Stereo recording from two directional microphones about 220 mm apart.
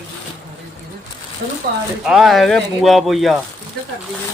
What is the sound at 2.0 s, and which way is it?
Speech, centre (ahead or behind).